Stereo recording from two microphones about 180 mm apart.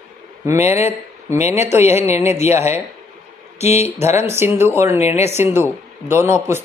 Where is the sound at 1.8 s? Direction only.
35° left (ahead or behind).